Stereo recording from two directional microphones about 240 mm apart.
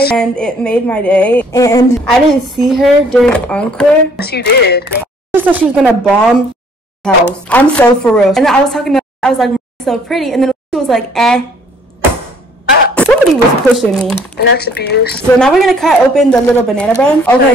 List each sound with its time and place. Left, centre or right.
0.1 s a woman's voice: centre
2.0 s a woman's voice: centre
4.2 s speech: left
5.3 s a woman's voice: centre
12.9 s a woman's voice: centre
14.5 s speech: left
15.3 s a woman's voice: centre